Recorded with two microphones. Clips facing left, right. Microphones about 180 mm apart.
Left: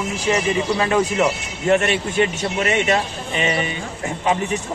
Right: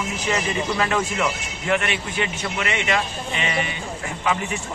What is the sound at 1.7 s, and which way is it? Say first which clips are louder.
A man's voice: left 6 dB; 45° left (ahead or behind).